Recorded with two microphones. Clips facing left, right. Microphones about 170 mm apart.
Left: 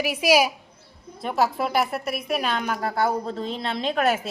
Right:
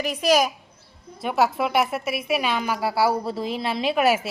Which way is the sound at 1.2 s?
5° right (ahead or behind).